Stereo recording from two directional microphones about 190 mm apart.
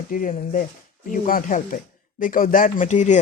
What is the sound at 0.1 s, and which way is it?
Speech, 45° left (ahead or behind).